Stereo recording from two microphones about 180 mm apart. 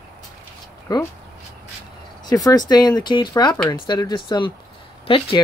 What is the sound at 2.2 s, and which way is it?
Speech, 20° left (ahead or behind).